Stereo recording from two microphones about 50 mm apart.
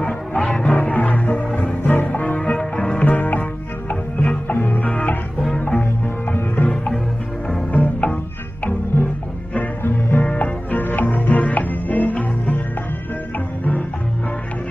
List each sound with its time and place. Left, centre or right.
0.0 s music: left
1.8 s music: left
2.0 s music: left
3.1 s music: left
6.3 s music: left